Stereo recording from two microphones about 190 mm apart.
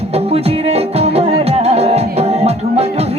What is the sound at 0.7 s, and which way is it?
Music, 30° right (ahead or behind).